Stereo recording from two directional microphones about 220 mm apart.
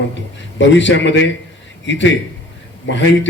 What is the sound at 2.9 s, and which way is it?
Speech, 55° left (ahead or behind).